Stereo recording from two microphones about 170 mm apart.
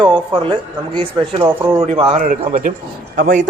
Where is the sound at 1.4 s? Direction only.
15° right (ahead or behind).